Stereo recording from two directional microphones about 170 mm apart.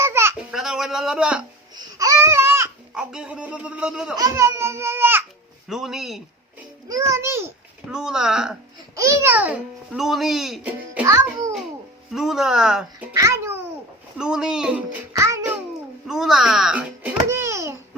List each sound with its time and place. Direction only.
0.0 s a sound: 15° right (ahead or behind)
0.3 s a sound: 5° right (ahead or behind)
1.7 s babbling: 20° right (ahead or behind)
2.9 s speech: 5° right (ahead or behind)
4.2 s a child's voice: 15° right (ahead or behind)
5.6 s speech: centre (ahead or behind)
6.8 s a child's voice: 20° right (ahead or behind)
7.9 s speech: 5° right (ahead or behind)
9.0 s a child's voice: 15° right (ahead or behind)
12.1 s speech: centre (ahead or behind)
13.1 s a child's voice: 15° right (ahead or behind)
14.2 s speech: 5° right (ahead or behind)
15.1 s a child's voice: 20° right (ahead or behind)
16.0 s a child's voice: 5° right (ahead or behind)